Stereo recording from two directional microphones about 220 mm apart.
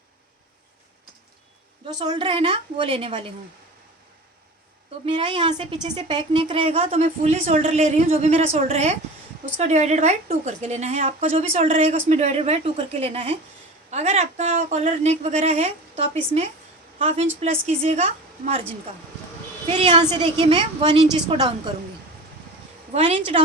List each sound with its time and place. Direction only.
1.9 s a woman's voice: 20° right (ahead or behind)
5.0 s a woman's voice: 20° right (ahead or behind)
19.7 s a woman's voice: 30° right (ahead or behind)
22.9 s a woman's voice: 25° right (ahead or behind)